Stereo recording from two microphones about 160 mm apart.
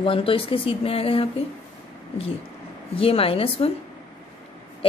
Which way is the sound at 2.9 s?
35° left (ahead or behind).